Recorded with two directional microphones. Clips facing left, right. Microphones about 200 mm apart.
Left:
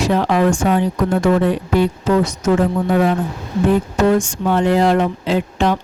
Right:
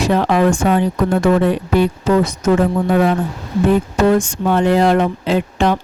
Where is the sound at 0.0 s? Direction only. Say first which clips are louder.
Right 1 dB; 55° right (ahead or behind).